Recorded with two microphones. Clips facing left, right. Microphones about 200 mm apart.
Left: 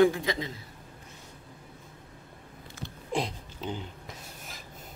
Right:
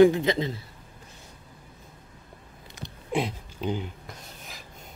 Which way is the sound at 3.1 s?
5° right (ahead or behind).